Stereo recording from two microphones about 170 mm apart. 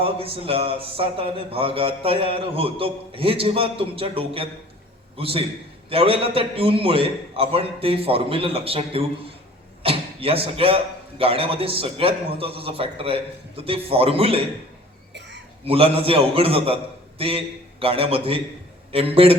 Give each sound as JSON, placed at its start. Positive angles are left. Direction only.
{"t": 0.0, "sound": "a man's voice", "side_deg": -35}
{"t": 15.6, "sound": "a man's voice", "side_deg": -35}